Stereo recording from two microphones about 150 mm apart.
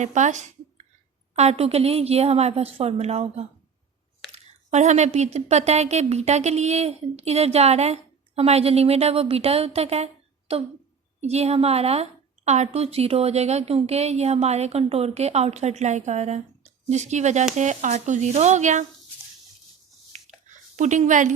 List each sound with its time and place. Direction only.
0.0 s a woman's voice: 55° right (ahead or behind)
4.7 s a woman's voice: 50° right (ahead or behind)
20.1 s a sound: 55° right (ahead or behind)